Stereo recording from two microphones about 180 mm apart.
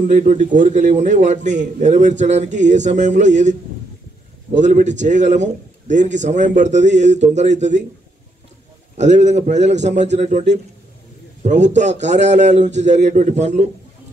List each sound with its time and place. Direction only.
0.1 s a man's voice: 40° right (ahead or behind)
4.6 s a man's voice: 45° right (ahead or behind)
8.9 s a man's voice: 40° right (ahead or behind)